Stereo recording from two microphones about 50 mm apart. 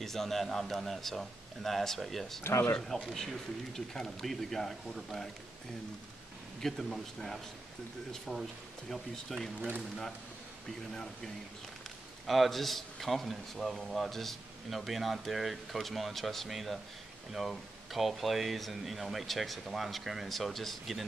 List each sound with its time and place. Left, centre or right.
0.0 s a man's voice: centre
2.4 s speech: left
3.1 s speech: centre
6.6 s a man's voice: centre
12.3 s a man's voice: centre